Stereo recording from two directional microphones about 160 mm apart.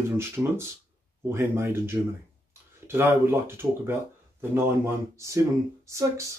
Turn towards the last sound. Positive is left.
turn(degrees=-20)  # may be behind; listen again after turning